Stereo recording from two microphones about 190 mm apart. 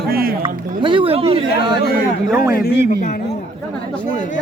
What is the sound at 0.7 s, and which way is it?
Speech, 25° right (ahead or behind).